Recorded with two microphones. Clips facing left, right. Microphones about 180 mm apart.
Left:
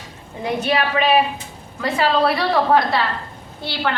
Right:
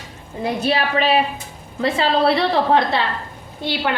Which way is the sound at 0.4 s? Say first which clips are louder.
Even; 35° right (ahead or behind).